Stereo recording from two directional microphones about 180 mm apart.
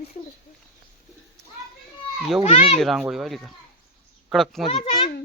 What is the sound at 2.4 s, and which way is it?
Speech, 35° left (ahead or behind).